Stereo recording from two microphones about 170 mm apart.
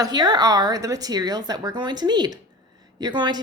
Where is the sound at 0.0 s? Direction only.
25° right (ahead or behind).